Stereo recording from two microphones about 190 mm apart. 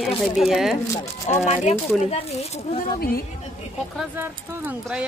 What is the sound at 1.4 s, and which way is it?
Speech, 35° left (ahead or behind).